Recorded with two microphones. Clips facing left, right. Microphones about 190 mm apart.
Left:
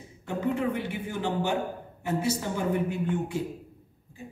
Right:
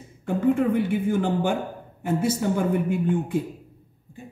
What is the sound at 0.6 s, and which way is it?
Speech, 50° right (ahead or behind).